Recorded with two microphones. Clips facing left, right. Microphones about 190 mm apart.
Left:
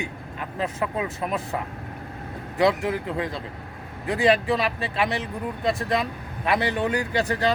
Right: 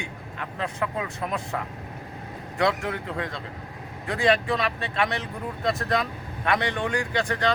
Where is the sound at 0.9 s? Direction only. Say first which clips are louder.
Left 3 dB; 20° left (ahead or behind).